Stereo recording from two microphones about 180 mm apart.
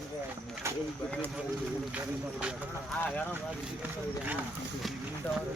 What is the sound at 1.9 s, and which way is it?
Speech, 5° right (ahead or behind).